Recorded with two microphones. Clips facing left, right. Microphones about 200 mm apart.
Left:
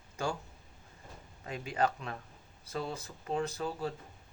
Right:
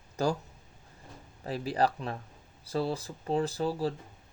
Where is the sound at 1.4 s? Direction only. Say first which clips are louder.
Right 4 dB; 35° right (ahead or behind).